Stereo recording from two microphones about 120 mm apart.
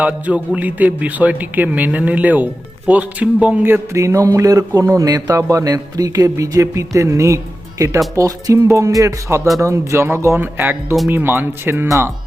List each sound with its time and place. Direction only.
0.0 s a man's voice: 10° right (ahead or behind)